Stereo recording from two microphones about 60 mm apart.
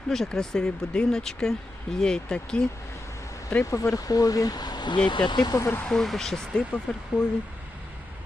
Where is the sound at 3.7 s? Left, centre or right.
Left.